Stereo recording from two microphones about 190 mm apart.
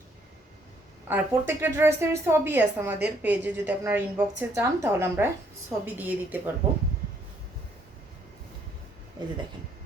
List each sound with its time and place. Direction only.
1.0 s a woman's voice: 10° right (ahead or behind)
9.2 s speech: 20° right (ahead or behind)